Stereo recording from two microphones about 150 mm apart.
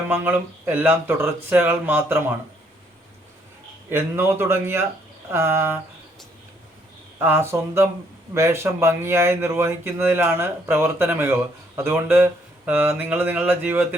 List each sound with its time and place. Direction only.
0.1 s speech: 10° right (ahead or behind)
3.8 s speech: 15° right (ahead or behind)
7.2 s speech: 15° right (ahead or behind)